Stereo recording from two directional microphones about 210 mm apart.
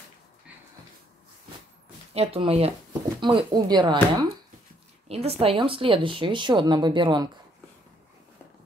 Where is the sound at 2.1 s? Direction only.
30° right (ahead or behind).